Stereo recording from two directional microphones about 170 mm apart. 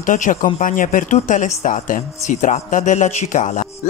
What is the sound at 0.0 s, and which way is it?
Speech, 50° left (ahead or behind).